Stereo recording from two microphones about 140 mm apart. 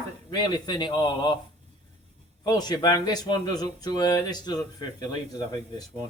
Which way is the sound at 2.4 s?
25° left (ahead or behind).